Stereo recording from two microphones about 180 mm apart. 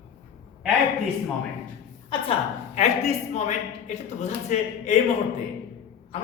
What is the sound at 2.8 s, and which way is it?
Speech, 40° left (ahead or behind).